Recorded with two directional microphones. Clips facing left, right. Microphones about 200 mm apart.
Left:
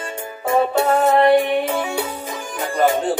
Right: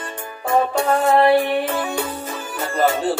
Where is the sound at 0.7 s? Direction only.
20° left (ahead or behind).